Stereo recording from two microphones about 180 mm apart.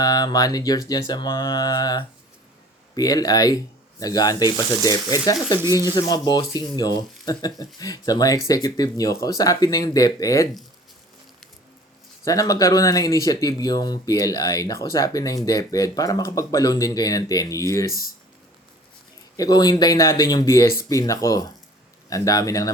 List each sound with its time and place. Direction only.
0.0 s speech: 20° left (ahead or behind)
12.2 s speech: 20° left (ahead or behind)
19.4 s speech: 20° left (ahead or behind)